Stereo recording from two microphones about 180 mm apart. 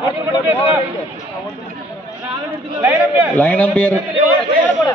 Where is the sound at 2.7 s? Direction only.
10° right (ahead or behind).